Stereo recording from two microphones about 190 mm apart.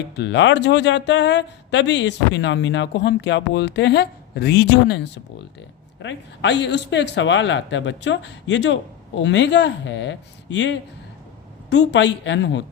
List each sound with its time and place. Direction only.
0.2 s speech: 70° left (ahead or behind)